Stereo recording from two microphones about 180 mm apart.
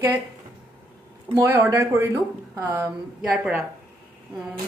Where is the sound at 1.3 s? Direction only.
15° right (ahead or behind).